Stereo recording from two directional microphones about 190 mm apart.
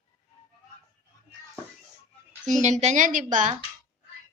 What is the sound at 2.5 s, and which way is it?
A woman's voice, 40° right (ahead or behind).